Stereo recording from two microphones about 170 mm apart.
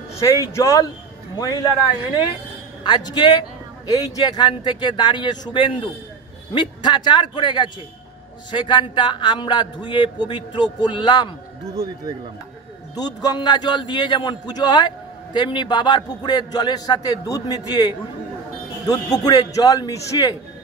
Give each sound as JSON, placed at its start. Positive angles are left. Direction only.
{"t": 0.2, "sound": "a man's voice", "side_deg": 20}
{"t": 2.8, "sound": "a man's voice", "side_deg": 25}
{"t": 12.9, "sound": "a man's voice", "side_deg": 25}